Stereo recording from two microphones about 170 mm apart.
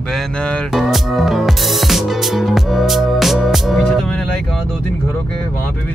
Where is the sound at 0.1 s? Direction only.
5° left (ahead or behind).